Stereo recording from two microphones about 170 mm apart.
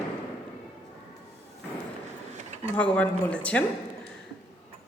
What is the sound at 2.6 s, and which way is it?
A man's voice, 10° left (ahead or behind).